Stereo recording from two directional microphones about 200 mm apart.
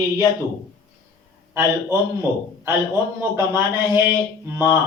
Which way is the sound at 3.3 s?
15° right (ahead or behind).